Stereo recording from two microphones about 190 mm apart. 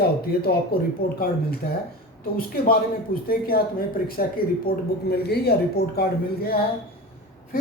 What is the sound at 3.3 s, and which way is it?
Speech, 50° left (ahead or behind).